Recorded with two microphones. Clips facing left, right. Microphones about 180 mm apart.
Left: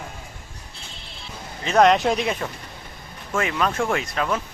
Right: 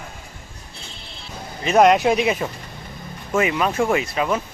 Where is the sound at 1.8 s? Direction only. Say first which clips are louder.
Right 2 dB; centre (ahead or behind).